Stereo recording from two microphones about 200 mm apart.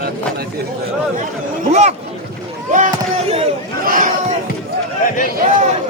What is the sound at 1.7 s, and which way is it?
Speech, 35° right (ahead or behind).